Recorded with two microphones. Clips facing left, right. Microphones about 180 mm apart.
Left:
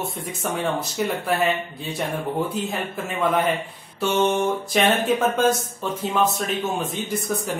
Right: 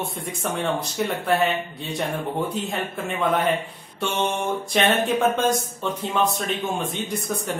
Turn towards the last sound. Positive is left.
turn(degrees=0)  # may be behind; listen again after turning